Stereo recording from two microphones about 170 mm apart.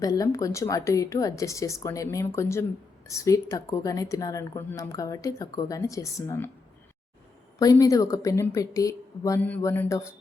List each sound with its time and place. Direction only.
0.0 s speech: 20° left (ahead or behind)
7.6 s speech: 20° left (ahead or behind)